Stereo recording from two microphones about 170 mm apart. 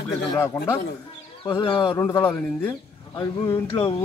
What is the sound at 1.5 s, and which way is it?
Speech, 25° left (ahead or behind).